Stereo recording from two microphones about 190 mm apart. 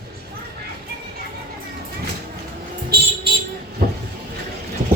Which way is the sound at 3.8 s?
50° right (ahead or behind).